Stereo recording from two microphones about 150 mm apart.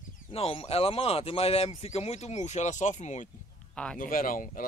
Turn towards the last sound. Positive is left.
turn(degrees=65)  # may be behind; listen again after turning